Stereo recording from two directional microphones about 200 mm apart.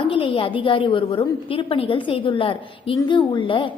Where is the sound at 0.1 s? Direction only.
25° left (ahead or behind).